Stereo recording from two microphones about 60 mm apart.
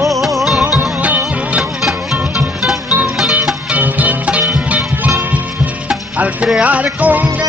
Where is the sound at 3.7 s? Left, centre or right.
Right.